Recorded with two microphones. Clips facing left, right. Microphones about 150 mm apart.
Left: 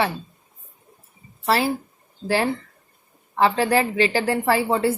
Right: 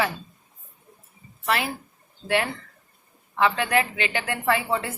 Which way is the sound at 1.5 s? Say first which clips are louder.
Left 5 dB; 30° left (ahead or behind).